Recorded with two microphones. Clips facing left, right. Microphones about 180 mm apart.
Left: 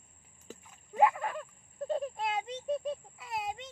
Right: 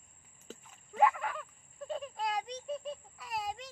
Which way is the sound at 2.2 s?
25° left (ahead or behind).